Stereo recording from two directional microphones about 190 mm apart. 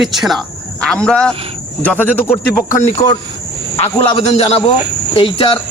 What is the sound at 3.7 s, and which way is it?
Speech, 30° left (ahead or behind).